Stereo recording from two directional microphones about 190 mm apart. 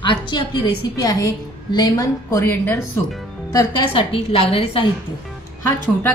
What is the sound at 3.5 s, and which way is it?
A woman's voice, 30° left (ahead or behind).